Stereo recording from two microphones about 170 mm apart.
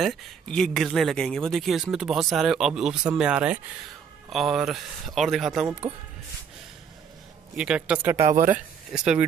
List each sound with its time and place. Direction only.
0.0 s speech: centre (ahead or behind)
7.5 s speech: 5° right (ahead or behind)
8.2 s speech: 50° right (ahead or behind)
8.9 s speech: 5° right (ahead or behind)